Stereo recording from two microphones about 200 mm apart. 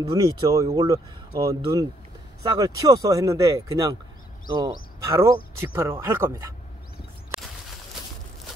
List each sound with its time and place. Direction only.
0.1 s speech: 20° right (ahead or behind)